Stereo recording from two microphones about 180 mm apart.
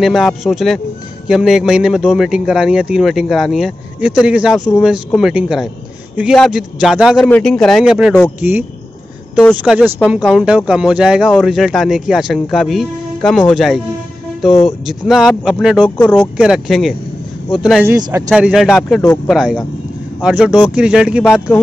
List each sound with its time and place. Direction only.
0.0 s speech: centre (ahead or behind)
14.9 s speech: centre (ahead or behind)
17.8 s speech: 20° right (ahead or behind)
18.3 s speech: 5° right (ahead or behind)